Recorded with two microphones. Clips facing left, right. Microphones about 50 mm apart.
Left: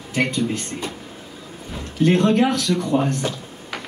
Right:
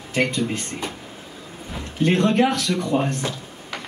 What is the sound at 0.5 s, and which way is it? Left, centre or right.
Speech, right.